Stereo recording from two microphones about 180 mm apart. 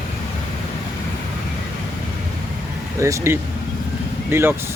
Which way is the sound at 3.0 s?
15° right (ahead or behind).